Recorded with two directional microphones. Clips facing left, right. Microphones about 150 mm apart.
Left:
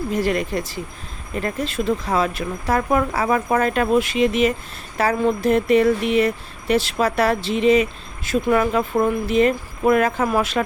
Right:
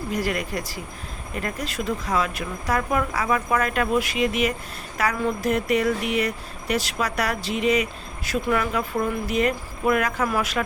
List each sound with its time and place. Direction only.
0.1 s speech: 25° left (ahead or behind)